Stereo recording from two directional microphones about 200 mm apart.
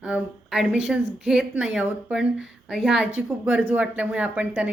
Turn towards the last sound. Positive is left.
turn(degrees=-5)  # may be behind; listen again after turning